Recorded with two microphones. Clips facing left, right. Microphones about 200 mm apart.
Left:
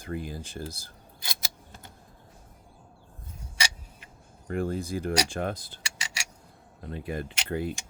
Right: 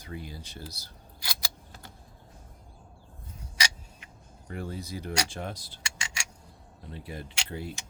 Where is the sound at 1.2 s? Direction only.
20° left (ahead or behind).